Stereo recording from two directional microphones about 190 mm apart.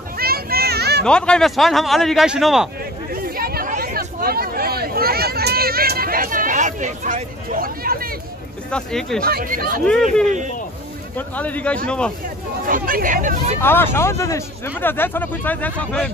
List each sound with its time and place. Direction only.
0.2 s a sound: 55° right (ahead or behind)
1.0 s speech: 5° left (ahead or behind)
3.1 s chatter: 50° right (ahead or behind)
3.7 s hubbub: 50° right (ahead or behind)
8.6 s speech: 5° left (ahead or behind)
9.2 s speech: 50° right (ahead or behind)
11.1 s speech: 10° left (ahead or behind)
12.6 s speech: 45° right (ahead or behind)
13.6 s speech: 10° left (ahead or behind)